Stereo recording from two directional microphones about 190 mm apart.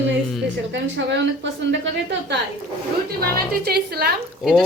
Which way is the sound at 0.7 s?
70° right (ahead or behind).